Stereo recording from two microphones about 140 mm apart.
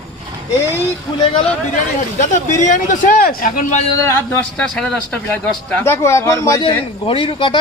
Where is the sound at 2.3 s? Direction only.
65° left (ahead or behind).